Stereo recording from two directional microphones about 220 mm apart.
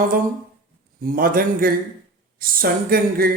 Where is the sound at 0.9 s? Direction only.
40° right (ahead or behind).